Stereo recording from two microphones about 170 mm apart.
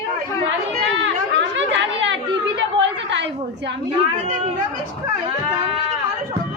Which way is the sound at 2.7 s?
90° right.